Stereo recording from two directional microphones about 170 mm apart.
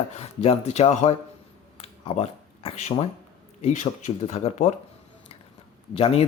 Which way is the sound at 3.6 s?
45° left (ahead or behind).